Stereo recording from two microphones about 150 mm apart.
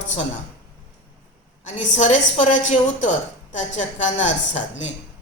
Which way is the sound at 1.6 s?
50° left (ahead or behind).